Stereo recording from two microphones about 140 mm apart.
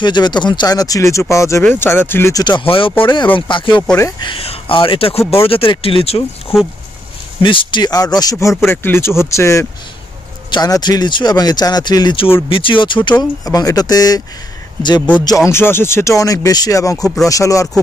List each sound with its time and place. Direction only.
0.0 s speech: 30° left (ahead or behind)
2.4 s speech: 35° left (ahead or behind)
16.9 s speech: 5° left (ahead or behind)
17.3 s speech: 25° left (ahead or behind)